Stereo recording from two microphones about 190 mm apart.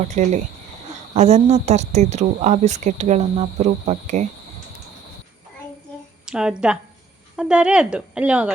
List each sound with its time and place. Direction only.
0.1 s speech: 40° right (ahead or behind)
6.2 s a woman's voice: 5° right (ahead or behind)